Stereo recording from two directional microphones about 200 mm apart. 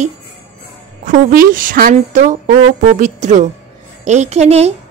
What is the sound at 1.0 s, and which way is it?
A woman's voice, 40° right (ahead or behind).